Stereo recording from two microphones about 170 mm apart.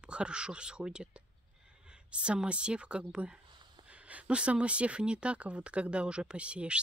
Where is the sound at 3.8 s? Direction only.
10° right (ahead or behind).